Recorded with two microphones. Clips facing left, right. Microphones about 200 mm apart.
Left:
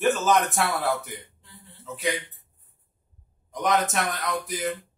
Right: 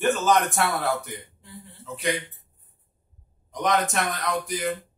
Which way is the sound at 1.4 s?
15° right (ahead or behind).